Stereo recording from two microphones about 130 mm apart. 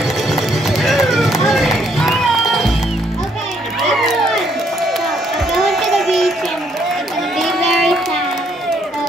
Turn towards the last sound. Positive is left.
turn(degrees=0)  # may be behind; listen again after turning